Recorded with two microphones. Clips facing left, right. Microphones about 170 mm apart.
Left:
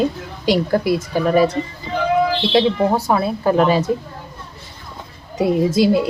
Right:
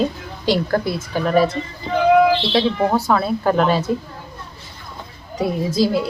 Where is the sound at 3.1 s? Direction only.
15° left (ahead or behind).